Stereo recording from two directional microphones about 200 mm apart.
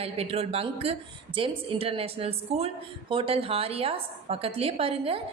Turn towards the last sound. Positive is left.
turn(degrees=-30)  # may be behind; listen again after turning